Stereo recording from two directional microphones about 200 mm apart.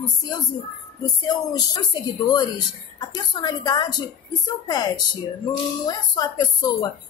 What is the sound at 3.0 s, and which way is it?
Speech, 20° left (ahead or behind).